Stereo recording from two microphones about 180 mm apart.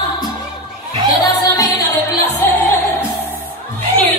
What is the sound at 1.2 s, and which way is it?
Music, 20° left (ahead or behind).